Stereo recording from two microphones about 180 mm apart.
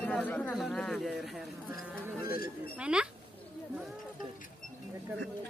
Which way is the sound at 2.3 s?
55° left (ahead or behind).